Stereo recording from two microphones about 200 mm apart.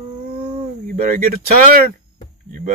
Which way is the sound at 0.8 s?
45° right (ahead or behind).